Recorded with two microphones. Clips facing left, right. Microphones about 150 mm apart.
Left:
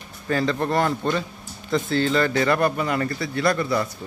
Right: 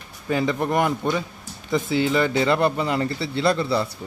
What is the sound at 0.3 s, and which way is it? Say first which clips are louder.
Speech: even; 15° right (ahead or behind).